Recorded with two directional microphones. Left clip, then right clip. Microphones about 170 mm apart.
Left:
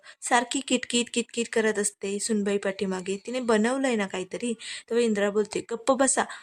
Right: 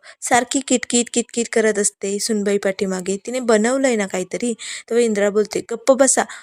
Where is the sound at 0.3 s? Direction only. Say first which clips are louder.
Right 7 dB; 15° right (ahead or behind).